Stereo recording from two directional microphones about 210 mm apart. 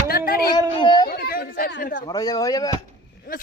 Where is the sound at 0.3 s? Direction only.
45° left (ahead or behind).